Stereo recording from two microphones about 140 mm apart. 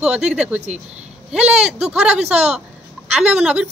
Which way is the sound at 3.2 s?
5° right (ahead or behind).